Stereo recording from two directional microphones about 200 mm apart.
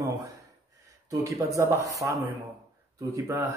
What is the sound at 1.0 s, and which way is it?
Speech, 15° right (ahead or behind).